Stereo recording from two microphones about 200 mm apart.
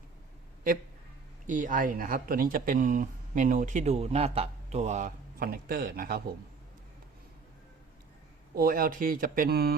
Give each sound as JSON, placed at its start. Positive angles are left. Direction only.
{"t": 1.5, "sound": "speech", "side_deg": -40}
{"t": 8.5, "sound": "speech", "side_deg": -45}